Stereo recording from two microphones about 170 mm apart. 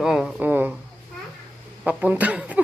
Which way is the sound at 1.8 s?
10° right (ahead or behind).